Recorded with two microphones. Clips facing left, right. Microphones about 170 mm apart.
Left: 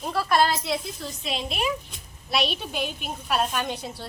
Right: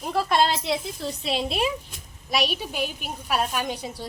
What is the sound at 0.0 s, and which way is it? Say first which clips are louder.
A woman's voice: even; 20° right (ahead or behind).